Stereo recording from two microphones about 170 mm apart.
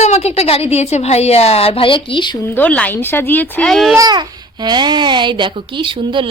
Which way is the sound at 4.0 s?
25° right (ahead or behind).